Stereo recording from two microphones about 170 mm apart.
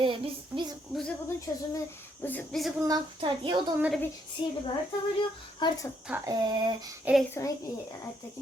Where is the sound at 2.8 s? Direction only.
25° right (ahead or behind).